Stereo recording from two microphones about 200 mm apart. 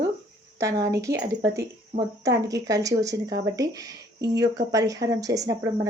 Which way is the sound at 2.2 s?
15° right (ahead or behind).